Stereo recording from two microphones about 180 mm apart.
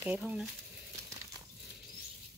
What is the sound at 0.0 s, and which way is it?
Speech, 5° right (ahead or behind).